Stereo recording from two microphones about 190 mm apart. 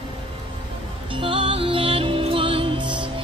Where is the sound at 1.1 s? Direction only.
25° right (ahead or behind).